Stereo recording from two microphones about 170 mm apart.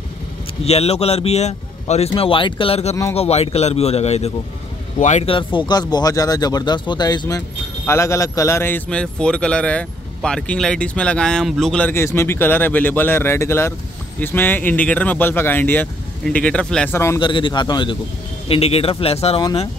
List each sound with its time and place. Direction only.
0.7 s speech: 40° left (ahead or behind); by 17.2 s 15° left (ahead or behind)
17.2 s a man's voice: 30° left (ahead or behind)